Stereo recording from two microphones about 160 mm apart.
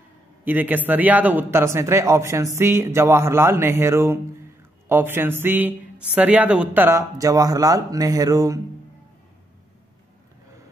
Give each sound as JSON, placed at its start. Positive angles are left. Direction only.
{"t": 0.5, "sound": "speech", "side_deg": -10}